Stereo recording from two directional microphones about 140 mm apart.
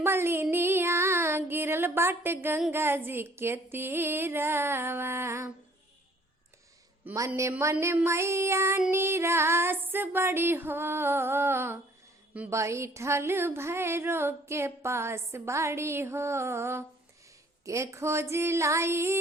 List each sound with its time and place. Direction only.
0.0 s music: 15° right (ahead or behind)
0.5 s female singing: 15° right (ahead or behind)
2.7 s music: 15° right (ahead or behind)
7.0 s a sound: 15° right (ahead or behind)
8.9 s music: 20° right (ahead or behind)
12.3 s a woman's voice: 10° right (ahead or behind)
12.5 s a sound: 20° right (ahead or behind)